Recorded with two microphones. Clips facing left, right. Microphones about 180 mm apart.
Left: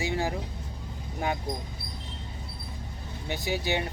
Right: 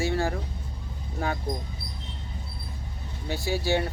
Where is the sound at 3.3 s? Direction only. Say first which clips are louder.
Right 3 dB; 15° left (ahead or behind).